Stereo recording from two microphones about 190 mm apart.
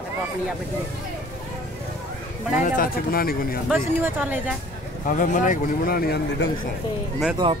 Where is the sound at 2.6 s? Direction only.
45° left (ahead or behind).